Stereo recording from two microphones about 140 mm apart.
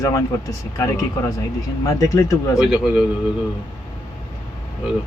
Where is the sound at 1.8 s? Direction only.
25° left (ahead or behind).